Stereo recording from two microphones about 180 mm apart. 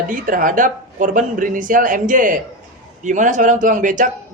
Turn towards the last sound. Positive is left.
turn(degrees=-45)  # may be behind; listen again after turning